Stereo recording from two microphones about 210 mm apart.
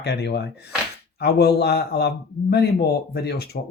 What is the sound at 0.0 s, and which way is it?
A man's voice, 50° left (ahead or behind).